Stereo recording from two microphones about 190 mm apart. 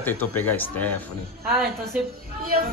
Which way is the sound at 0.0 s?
10° left (ahead or behind).